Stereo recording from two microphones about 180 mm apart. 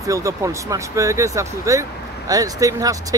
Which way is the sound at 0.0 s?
15° right (ahead or behind).